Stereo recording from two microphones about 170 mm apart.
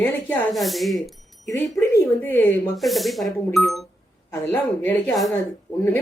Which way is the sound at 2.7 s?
Centre (ahead or behind).